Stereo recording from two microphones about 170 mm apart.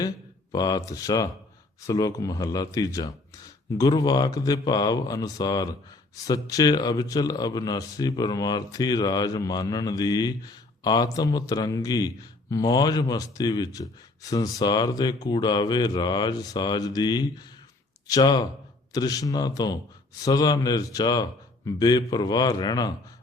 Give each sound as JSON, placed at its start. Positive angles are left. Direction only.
{"t": 0.5, "sound": "a man's voice", "side_deg": 20}